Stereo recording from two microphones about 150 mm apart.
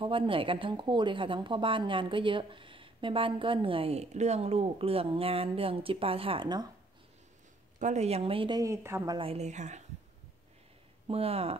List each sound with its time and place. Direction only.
0.0 s a woman's voice: 35° right (ahead or behind)
7.8 s a woman's voice: 50° right (ahead or behind)
8.5 s a woman's voice: 20° right (ahead or behind)
9.2 s a woman's voice: 45° right (ahead or behind)
11.1 s a woman's voice: 40° right (ahead or behind)